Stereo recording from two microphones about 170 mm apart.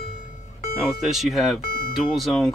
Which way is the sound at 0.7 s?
Centre (ahead or behind).